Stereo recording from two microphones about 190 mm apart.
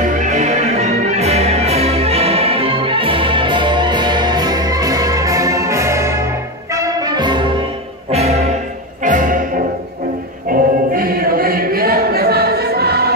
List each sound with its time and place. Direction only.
0.0 s music: 40° right (ahead or behind)
10.5 s music: 50° right (ahead or behind)